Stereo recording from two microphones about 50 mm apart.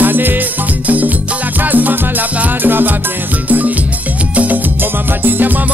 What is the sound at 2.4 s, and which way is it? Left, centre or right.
Music, right.